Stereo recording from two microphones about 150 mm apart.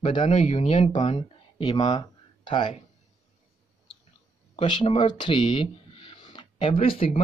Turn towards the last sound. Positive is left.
turn(degrees=40)  # may be behind; listen again after turning